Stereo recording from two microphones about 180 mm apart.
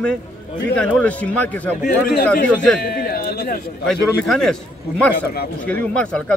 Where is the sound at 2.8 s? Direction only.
55° left (ahead or behind).